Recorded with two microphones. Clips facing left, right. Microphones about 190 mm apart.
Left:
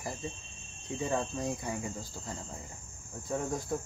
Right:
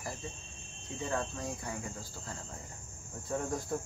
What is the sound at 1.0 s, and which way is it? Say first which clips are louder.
Speech: left 3 dB; 15° left (ahead or behind).